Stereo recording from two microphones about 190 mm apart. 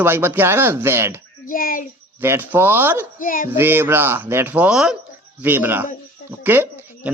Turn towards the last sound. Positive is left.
turn(degrees=-10)  # may be behind; listen again after turning